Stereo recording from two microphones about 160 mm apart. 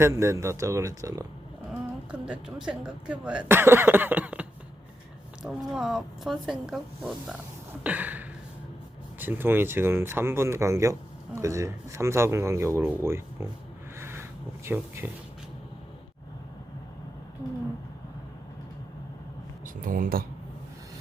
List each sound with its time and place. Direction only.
0.0 s speech: 15° right (ahead or behind)
2.1 s speech: 5° right (ahead or behind)
7.9 s a sound: 10° right (ahead or behind)
9.1 s speech: 10° right (ahead or behind)
14.0 s a sound: 15° right (ahead or behind)
19.6 s speech: 60° right (ahead or behind)